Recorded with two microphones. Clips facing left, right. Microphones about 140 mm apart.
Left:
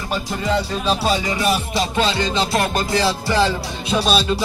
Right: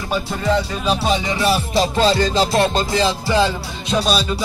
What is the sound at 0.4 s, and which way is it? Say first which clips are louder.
Speech: right 2 dB; 10° left (ahead or behind).